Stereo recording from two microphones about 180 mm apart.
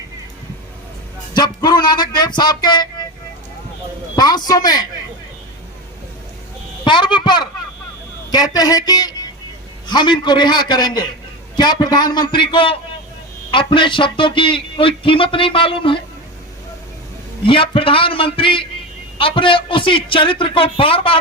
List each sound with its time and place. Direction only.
1.3 s a sound: 25° left (ahead or behind)
4.1 s a man's voice: 20° left (ahead or behind)
6.8 s a child's voice: 25° left (ahead or behind)
17.4 s a man's voice: 30° left (ahead or behind)